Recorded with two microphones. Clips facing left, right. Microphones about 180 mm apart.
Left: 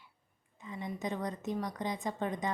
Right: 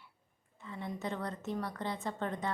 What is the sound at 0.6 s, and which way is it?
Speech, 15° left (ahead or behind).